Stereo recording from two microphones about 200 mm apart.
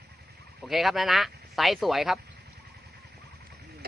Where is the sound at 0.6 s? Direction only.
Centre (ahead or behind).